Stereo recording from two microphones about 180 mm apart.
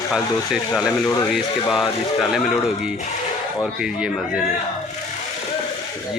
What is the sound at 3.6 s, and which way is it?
Speech, 5° right (ahead or behind).